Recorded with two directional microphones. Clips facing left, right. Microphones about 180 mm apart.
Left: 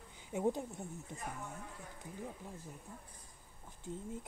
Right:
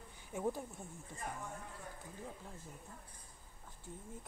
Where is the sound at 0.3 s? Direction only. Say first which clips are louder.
Left 4 dB; 20° left (ahead or behind).